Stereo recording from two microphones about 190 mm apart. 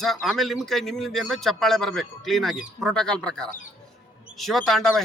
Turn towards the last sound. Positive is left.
turn(degrees=0)  # may be behind; listen again after turning